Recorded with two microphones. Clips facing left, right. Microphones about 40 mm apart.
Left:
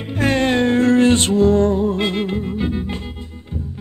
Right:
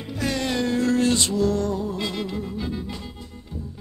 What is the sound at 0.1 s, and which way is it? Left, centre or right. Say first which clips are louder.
Music: left 8 dB; left.